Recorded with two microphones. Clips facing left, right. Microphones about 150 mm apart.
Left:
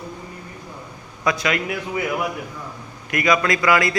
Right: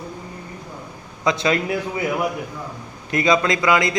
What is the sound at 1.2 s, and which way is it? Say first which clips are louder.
Speech: right 2 dB; 25° right (ahead or behind).